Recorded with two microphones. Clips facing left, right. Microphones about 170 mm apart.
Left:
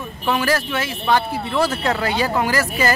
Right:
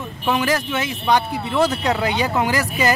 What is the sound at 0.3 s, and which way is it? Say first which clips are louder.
Speech: even; 20° right (ahead or behind).